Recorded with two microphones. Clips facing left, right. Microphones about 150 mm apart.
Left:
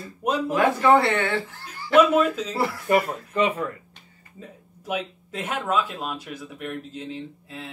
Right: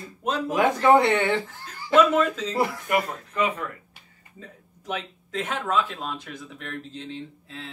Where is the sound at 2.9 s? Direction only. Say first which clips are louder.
Left 4 dB; 30° left (ahead or behind).